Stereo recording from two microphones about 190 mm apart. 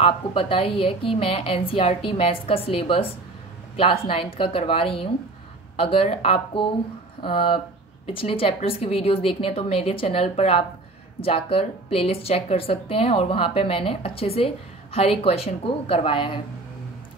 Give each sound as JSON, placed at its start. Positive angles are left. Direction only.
{"t": 0.0, "sound": "a woman's voice", "side_deg": 30}